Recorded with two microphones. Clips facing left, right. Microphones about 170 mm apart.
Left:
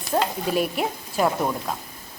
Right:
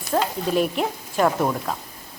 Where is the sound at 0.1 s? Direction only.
20° left (ahead or behind).